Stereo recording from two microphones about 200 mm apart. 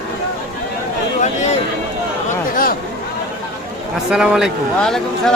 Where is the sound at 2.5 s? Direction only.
45° left (ahead or behind).